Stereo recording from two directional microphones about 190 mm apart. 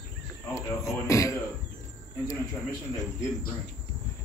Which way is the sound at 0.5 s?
15° left (ahead or behind).